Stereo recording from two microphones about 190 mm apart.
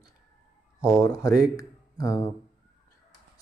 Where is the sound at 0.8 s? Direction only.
20° left (ahead or behind).